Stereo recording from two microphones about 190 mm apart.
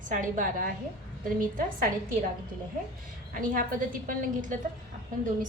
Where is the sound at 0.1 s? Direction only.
45° right (ahead or behind).